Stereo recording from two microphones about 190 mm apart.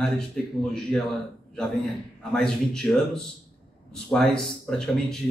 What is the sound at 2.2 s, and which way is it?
Speech, 5° left (ahead or behind).